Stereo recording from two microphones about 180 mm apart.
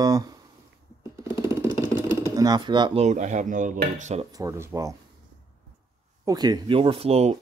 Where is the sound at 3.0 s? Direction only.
40° right (ahead or behind).